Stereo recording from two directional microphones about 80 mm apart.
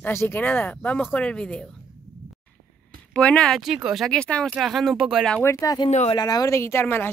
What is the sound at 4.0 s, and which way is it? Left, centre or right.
Speech, centre.